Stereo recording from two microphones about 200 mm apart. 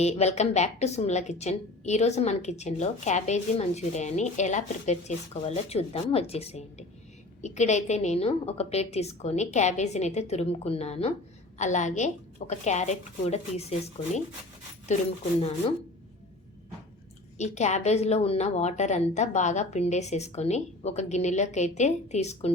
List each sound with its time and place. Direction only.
0.0 s a woman's voice: 35° left (ahead or behind)
15.4 s a woman's voice: 35° left (ahead or behind)
17.3 s a woman's voice: 35° left (ahead or behind)